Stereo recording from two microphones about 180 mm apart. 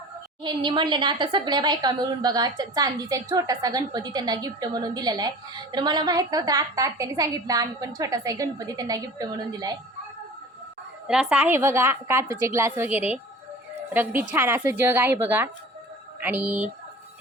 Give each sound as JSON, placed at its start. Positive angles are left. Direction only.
{"t": 0.4, "sound": "a woman's voice", "side_deg": -25}
{"t": 11.0, "sound": "a woman's voice", "side_deg": -5}